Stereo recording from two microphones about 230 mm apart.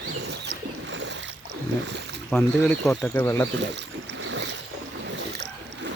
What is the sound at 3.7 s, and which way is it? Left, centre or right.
Boat, right.